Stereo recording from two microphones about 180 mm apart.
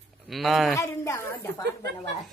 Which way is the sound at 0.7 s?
15° left (ahead or behind).